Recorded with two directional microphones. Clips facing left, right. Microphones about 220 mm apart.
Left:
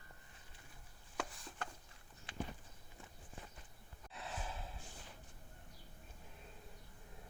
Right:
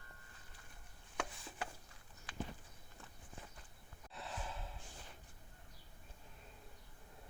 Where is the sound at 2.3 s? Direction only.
25° left (ahead or behind).